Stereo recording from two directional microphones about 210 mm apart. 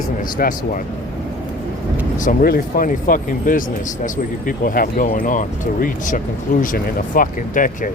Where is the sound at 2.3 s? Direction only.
45° left (ahead or behind).